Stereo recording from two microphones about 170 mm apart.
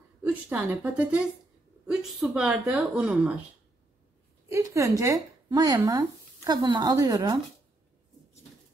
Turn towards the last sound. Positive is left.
turn(degrees=-25)  # may be behind; listen again after turning